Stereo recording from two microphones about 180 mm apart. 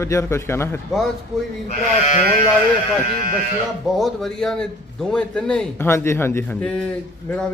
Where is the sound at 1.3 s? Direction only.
Centre (ahead or behind).